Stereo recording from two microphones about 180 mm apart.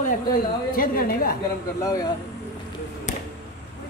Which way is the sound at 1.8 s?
20° left (ahead or behind).